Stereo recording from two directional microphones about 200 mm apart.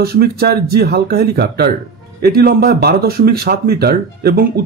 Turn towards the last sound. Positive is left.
turn(degrees=-50)  # may be behind; listen again after turning